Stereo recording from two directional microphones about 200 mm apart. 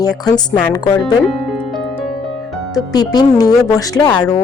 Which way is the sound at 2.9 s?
20° left (ahead or behind).